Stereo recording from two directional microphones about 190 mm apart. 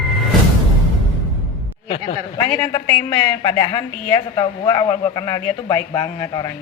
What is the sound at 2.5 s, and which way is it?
A man's voice, 15° left (ahead or behind).